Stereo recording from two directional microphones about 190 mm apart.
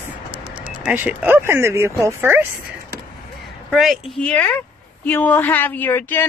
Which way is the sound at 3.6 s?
Centre (ahead or behind).